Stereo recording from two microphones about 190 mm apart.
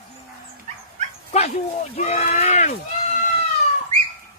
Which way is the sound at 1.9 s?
35° left (ahead or behind).